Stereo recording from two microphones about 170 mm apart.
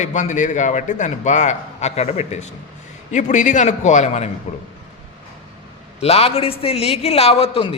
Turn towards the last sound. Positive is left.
turn(degrees=35)  # may be behind; listen again after turning